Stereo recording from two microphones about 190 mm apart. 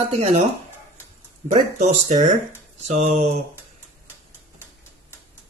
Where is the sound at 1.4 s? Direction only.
35° right (ahead or behind).